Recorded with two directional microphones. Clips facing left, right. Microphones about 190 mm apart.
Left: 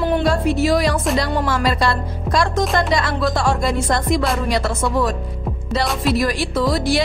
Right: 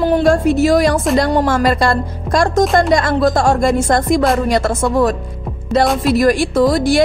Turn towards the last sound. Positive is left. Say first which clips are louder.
# right 6 dB
turn(degrees=-45)  # may be behind; listen again after turning